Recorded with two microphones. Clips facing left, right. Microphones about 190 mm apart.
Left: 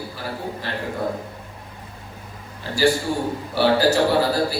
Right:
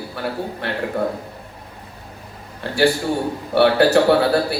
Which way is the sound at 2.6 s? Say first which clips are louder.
Right 2 dB; 65° right (ahead or behind).